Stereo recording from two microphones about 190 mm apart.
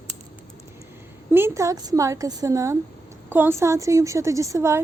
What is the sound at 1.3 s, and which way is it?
A woman's voice, 15° right (ahead or behind).